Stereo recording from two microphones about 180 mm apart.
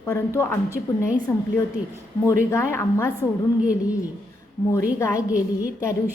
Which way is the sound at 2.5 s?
15° left (ahead or behind).